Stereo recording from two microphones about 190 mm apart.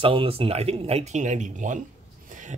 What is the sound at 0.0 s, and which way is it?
Speech, 30° right (ahead or behind).